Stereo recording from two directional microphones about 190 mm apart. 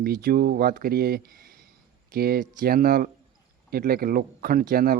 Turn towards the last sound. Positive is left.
turn(degrees=-50)  # may be behind; listen again after turning